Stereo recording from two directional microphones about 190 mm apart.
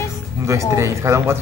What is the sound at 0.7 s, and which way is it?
Speech, 15° right (ahead or behind).